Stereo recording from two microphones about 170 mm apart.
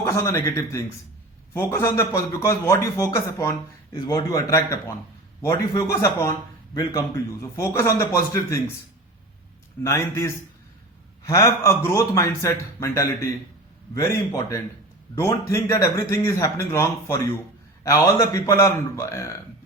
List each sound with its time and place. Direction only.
0.0 s a man's voice: 15° left (ahead or behind)
9.8 s a man's voice: 15° left (ahead or behind)